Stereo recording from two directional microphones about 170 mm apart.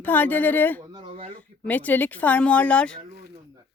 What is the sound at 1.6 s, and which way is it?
Speech, 10° left (ahead or behind).